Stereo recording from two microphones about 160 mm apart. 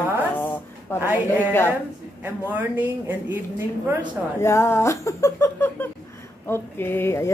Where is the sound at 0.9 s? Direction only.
15° left (ahead or behind).